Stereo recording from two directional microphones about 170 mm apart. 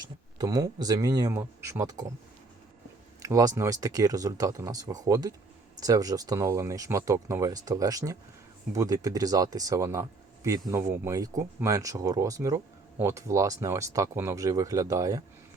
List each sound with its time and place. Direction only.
0.0 s speech: 25° right (ahead or behind)
3.2 s speech: 20° right (ahead or behind)